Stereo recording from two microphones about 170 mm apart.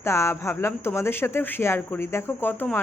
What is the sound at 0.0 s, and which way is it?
Speech, 15° left (ahead or behind).